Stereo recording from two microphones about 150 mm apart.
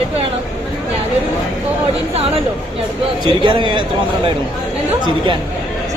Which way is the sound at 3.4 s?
30° right (ahead or behind).